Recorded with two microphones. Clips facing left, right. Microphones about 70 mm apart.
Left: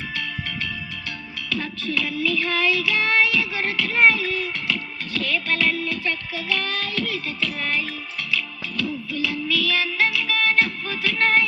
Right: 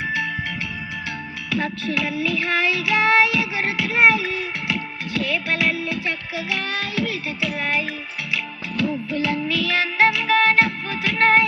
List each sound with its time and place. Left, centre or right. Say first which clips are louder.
0.0 s music: right 6 dB; centre
1.5 s child singing: right 3 dB; centre
8.3 s music: even; right